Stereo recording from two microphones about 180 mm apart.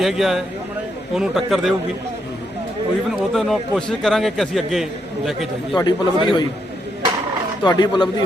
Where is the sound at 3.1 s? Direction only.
Centre (ahead or behind).